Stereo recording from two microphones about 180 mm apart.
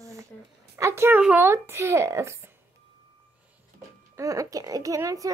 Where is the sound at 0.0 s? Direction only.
15° right (ahead or behind).